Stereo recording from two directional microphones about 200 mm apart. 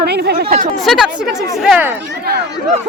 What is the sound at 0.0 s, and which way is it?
Speech, 55° right (ahead or behind).